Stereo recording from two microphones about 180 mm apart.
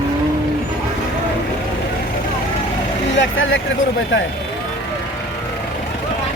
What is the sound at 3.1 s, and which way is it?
Speech, 85° left.